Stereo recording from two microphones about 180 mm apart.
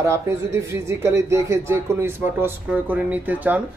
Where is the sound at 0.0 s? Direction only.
15° right (ahead or behind).